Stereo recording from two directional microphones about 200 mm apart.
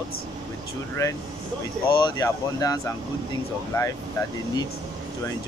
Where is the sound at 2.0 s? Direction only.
20° left (ahead or behind).